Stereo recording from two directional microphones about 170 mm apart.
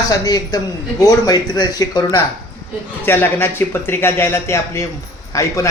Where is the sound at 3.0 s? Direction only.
10° left (ahead or behind).